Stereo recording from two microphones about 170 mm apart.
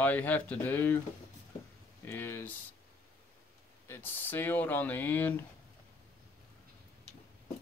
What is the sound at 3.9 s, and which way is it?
Speech, 10° left (ahead or behind).